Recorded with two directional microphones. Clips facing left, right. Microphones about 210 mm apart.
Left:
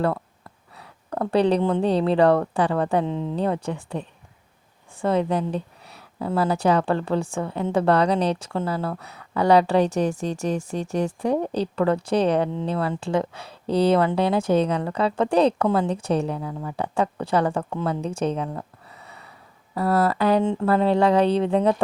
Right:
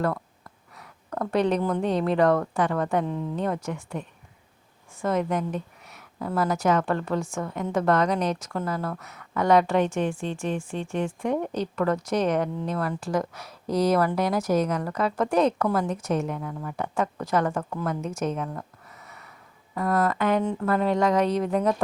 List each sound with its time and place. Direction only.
0.8 s a woman's voice: 30° left (ahead or behind)